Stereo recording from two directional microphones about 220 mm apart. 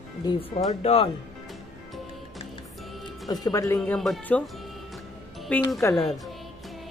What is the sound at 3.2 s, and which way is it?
Speech, 15° left (ahead or behind).